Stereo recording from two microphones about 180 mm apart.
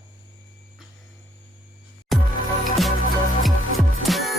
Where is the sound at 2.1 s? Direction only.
Centre (ahead or behind).